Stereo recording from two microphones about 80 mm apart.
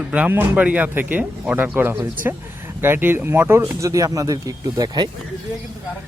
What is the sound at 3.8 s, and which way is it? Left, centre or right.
Speech, right.